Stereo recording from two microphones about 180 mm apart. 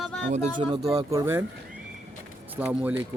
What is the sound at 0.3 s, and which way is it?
Speech, 45° right (ahead or behind).